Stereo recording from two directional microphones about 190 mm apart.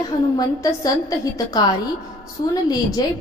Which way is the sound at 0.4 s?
20° left (ahead or behind).